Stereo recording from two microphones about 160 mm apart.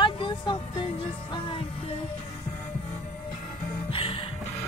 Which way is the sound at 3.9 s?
35° left (ahead or behind).